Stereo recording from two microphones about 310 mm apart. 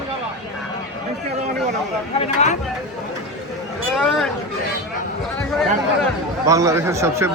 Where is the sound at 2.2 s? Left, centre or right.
Left.